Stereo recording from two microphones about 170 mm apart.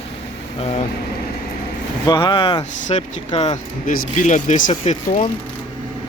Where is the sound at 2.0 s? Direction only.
25° left (ahead or behind).